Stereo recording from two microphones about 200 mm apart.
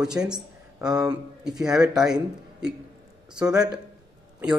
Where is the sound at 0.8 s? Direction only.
15° right (ahead or behind).